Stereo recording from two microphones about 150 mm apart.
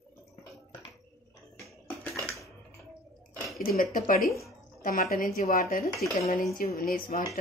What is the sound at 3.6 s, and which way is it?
A woman's voice, 75° left (ahead or behind).